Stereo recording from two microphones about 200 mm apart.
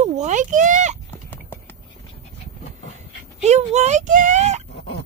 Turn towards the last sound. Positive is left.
turn(degrees=-35)  # may be behind; listen again after turning